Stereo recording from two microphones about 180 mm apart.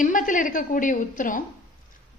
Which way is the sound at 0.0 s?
45° left (ahead or behind).